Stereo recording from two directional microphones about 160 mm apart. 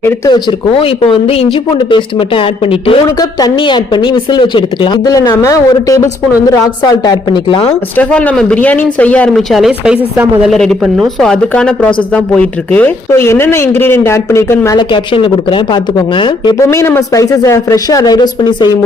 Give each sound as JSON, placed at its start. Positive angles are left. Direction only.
{"t": 0.0, "sound": "speech", "side_deg": 25}
{"t": 7.9, "sound": "speech", "side_deg": 10}
{"t": 14.8, "sound": "speech", "side_deg": 30}
{"t": 16.6, "sound": "speech", "side_deg": 15}